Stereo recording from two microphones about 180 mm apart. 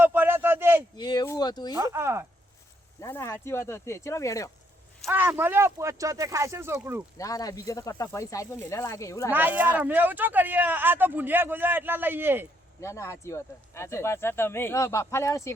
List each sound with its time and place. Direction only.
0.0 s a sound: 10° right (ahead or behind)
0.9 s speech: 25° left (ahead or behind)
1.7 s speech: 15° right (ahead or behind)
3.0 s speech: 15° left (ahead or behind)
5.0 s speech: 10° right (ahead or behind)
7.2 s speech: 20° left (ahead or behind)
9.3 s speech: 10° right (ahead or behind)
12.8 s speech: 15° left (ahead or behind)